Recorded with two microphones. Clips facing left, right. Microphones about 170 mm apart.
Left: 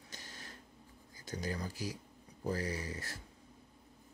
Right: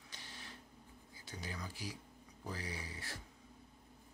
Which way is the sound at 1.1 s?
45° left (ahead or behind).